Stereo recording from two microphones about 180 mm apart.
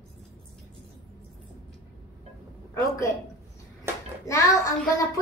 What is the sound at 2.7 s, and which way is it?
Speech, 15° left (ahead or behind).